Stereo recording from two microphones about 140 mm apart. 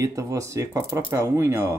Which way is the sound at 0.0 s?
20° right (ahead or behind).